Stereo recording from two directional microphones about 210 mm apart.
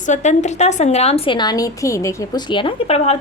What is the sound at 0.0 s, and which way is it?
A woman's voice, 35° left (ahead or behind).